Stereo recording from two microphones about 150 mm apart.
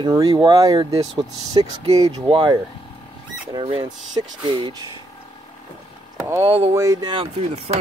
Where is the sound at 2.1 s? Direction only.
35° right (ahead or behind).